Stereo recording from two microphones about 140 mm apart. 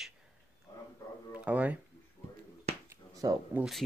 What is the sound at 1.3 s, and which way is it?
Speech, 10° right (ahead or behind).